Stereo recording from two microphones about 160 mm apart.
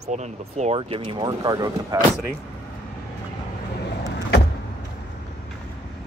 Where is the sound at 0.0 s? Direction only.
45° right (ahead or behind); by 2.0 s 25° right (ahead or behind).